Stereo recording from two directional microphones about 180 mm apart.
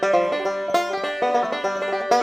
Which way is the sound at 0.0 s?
Centre (ahead or behind).